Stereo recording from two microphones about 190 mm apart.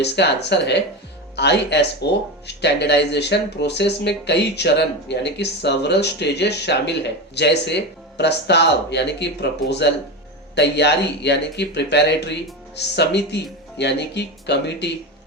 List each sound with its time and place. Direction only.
0.0 s speech: 65° left (ahead or behind)